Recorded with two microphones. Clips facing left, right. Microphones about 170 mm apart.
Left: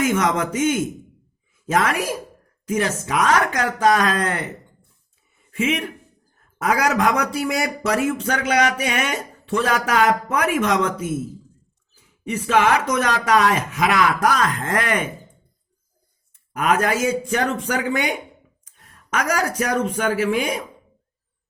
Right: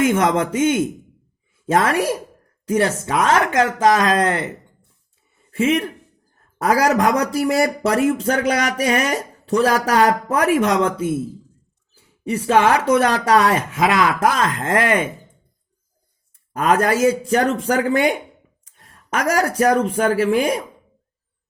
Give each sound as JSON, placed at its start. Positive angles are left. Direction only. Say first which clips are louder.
{"t": 0.0, "sound": "speech", "louder": "right 3 dB", "side_deg": -25}
{"t": 16.5, "sound": "speech", "louder": "right 3 dB", "side_deg": -30}